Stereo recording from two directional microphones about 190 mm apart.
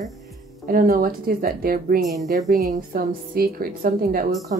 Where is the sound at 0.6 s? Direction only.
50° right (ahead or behind).